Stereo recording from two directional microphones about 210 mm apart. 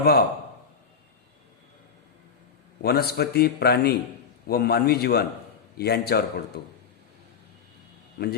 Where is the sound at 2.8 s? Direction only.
50° left (ahead or behind).